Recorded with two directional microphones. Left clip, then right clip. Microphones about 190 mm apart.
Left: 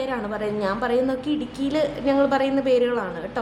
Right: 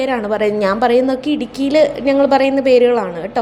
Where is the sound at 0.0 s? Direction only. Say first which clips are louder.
Right 10 dB; 30° right (ahead or behind).